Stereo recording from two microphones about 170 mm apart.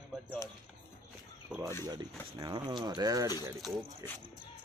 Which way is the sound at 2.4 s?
25° right (ahead or behind).